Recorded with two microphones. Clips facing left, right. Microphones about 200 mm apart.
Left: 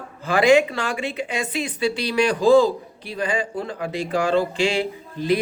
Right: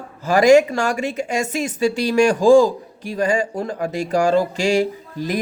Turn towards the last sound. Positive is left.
turn(degrees=-45)  # may be behind; listen again after turning